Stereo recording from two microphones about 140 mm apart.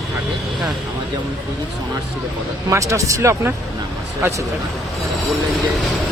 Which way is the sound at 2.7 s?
20° right (ahead or behind).